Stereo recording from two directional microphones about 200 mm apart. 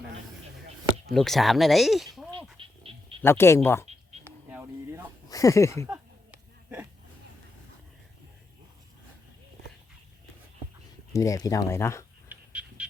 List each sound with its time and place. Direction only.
1.1 s speech: centre (ahead or behind)
2.6 s a sound: 25° right (ahead or behind)
3.2 s speech: 10° left (ahead or behind)
4.2 s a sound: 10° right (ahead or behind)
5.3 s speech: 15° left (ahead or behind)
11.1 s speech: 15° left (ahead or behind)
12.3 s bird: 5° right (ahead or behind)